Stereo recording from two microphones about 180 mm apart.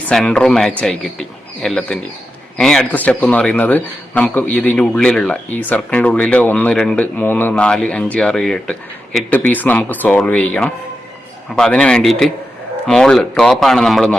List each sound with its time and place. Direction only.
0.1 s a man's voice: 5° left (ahead or behind)